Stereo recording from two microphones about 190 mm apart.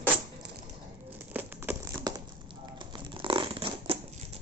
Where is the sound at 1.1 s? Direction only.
10° right (ahead or behind); by 4.0 s 30° right (ahead or behind).